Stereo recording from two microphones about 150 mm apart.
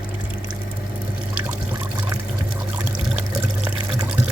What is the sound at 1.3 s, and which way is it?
Pour, 10° right (ahead or behind).